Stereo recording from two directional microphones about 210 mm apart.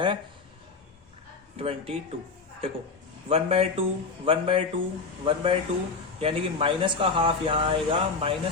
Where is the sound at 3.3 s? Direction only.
25° right (ahead or behind).